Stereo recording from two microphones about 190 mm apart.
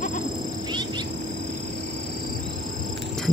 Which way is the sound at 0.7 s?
25° right (ahead or behind).